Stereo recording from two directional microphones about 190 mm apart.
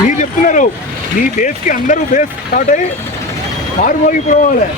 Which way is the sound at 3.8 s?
40° left (ahead or behind).